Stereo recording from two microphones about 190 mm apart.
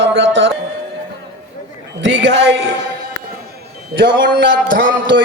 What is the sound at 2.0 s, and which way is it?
Speech, 65° right (ahead or behind).